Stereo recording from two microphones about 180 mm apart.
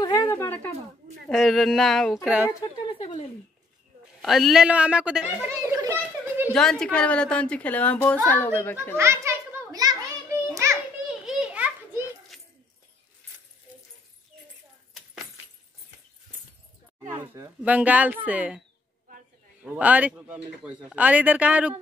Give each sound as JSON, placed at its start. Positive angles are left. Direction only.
{"t": 0.0, "sound": "a sound", "side_deg": 20}
{"t": 1.2, "sound": "speech", "side_deg": 0}
{"t": 2.2, "sound": "speech", "side_deg": -10}
{"t": 3.0, "sound": "a sound", "side_deg": 35}
{"t": 4.2, "sound": "a child's voice", "side_deg": 0}
{"t": 6.5, "sound": "a woman's voice", "side_deg": 5}
{"t": 8.9, "sound": "children playing", "side_deg": -15}
{"t": 11.1, "sound": "children playing", "side_deg": -5}
{"t": 17.2, "sound": "speech", "side_deg": -10}
{"t": 19.6, "sound": "speech", "side_deg": -10}